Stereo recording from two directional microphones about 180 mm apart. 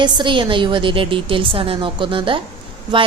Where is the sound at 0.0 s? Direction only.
25° right (ahead or behind).